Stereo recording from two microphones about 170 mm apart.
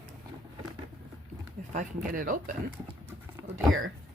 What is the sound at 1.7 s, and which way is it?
Speech, 50° right (ahead or behind).